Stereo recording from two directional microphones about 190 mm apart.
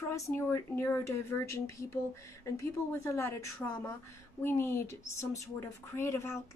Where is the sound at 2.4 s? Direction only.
15° left (ahead or behind).